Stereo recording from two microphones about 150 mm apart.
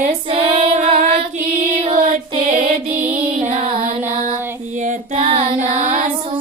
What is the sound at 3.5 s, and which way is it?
Music, 40° right (ahead or behind).